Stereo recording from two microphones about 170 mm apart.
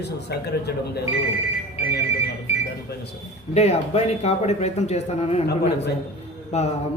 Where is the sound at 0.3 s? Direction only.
75° left (ahead or behind).